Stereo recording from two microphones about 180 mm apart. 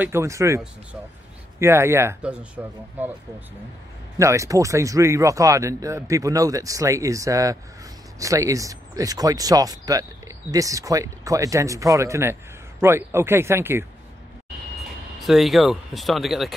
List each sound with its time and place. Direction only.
0.0 s speech: 15° right (ahead or behind)
1.6 s speech: 15° right (ahead or behind)
15.1 s speech: centre (ahead or behind)